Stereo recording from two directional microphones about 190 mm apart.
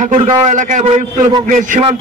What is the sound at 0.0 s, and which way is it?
A man's voice, 35° right (ahead or behind).